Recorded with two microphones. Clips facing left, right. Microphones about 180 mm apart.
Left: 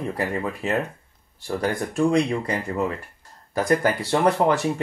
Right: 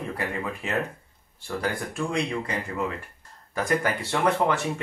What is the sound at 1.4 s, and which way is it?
Speech, 35° left (ahead or behind).